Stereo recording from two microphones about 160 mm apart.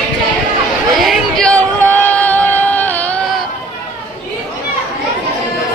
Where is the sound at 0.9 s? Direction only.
Centre (ahead or behind).